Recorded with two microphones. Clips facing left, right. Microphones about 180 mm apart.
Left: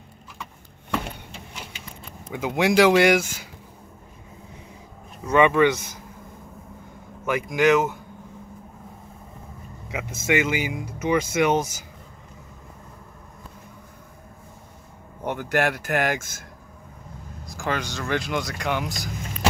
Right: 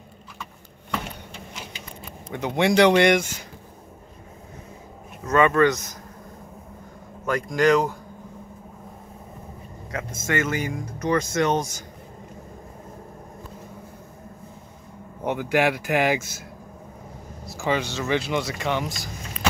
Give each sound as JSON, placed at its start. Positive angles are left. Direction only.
{"t": 2.3, "sound": "speech", "side_deg": 5}
{"t": 5.2, "sound": "speech", "side_deg": 10}
{"t": 7.2, "sound": "speech", "side_deg": 5}
{"t": 9.8, "sound": "speech", "side_deg": 10}
{"t": 15.2, "sound": "speech", "side_deg": -10}
{"t": 16.2, "sound": "speech", "side_deg": 50}
{"t": 17.6, "sound": "speech", "side_deg": -5}